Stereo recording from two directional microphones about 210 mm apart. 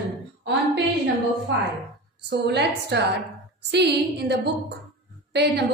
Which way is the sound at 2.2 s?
55° right (ahead or behind).